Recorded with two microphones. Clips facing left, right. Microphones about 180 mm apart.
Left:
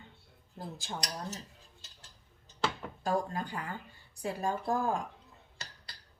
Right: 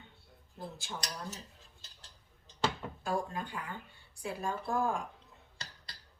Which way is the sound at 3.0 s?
40° left (ahead or behind).